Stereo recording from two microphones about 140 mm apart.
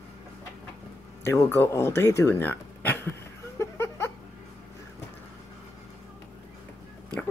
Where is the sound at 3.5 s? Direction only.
20° left (ahead or behind).